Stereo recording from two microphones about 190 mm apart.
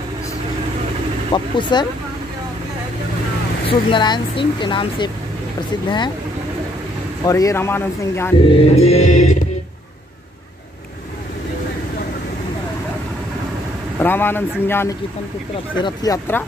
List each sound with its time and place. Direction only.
1.3 s speech: 25° left (ahead or behind)
3.6 s speech: 25° left (ahead or behind)
7.2 s speech: 15° left (ahead or behind)
8.7 s mantra: 35° left (ahead or behind)
13.9 s speech: 10° left (ahead or behind)